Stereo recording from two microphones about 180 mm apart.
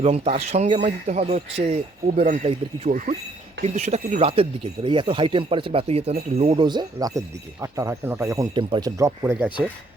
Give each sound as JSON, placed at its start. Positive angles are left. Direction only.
{"t": 0.0, "sound": "speech", "side_deg": -35}